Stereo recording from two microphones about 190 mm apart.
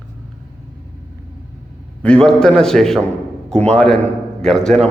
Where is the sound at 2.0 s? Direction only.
5° left (ahead or behind).